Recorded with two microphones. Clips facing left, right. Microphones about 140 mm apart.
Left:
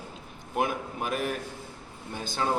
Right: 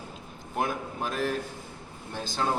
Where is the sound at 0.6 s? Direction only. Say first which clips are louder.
Left 1 dB; 5° left (ahead or behind).